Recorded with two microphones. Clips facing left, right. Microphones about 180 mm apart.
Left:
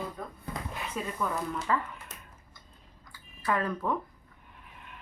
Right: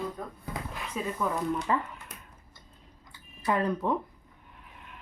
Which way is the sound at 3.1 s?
20° right (ahead or behind).